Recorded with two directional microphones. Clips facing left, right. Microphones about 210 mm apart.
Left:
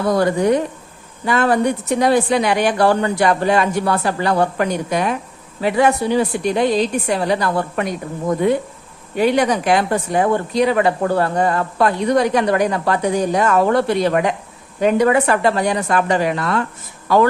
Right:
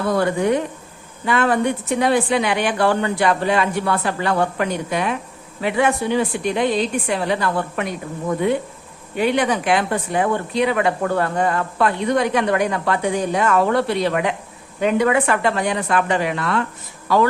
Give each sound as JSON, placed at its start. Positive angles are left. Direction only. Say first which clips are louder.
{"t": 0.1, "sound": "speech", "louder": "left 3 dB", "side_deg": 40}
{"t": 9.1, "sound": "speech", "louder": "left 3 dB", "side_deg": 40}